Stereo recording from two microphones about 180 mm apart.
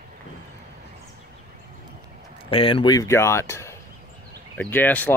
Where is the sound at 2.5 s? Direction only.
30° left (ahead or behind).